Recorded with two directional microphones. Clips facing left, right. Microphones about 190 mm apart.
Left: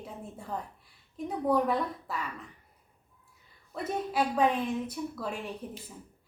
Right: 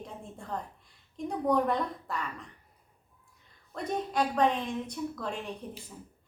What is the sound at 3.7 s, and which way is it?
A woman's voice, 5° left (ahead or behind).